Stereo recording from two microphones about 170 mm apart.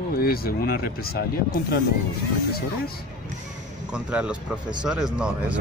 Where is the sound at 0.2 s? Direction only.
65° left (ahead or behind).